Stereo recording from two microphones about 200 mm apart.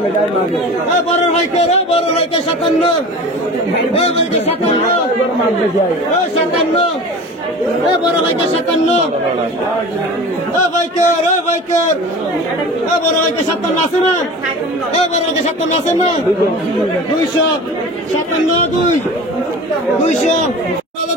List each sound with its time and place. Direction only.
1.3 s speech: 30° left (ahead or behind)
4.0 s speech: 30° left (ahead or behind)
11.0 s speech: 35° left (ahead or behind)
15.0 s speech: 35° left (ahead or behind)